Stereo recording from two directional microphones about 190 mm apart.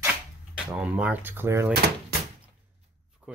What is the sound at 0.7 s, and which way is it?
Speech, 5° right (ahead or behind).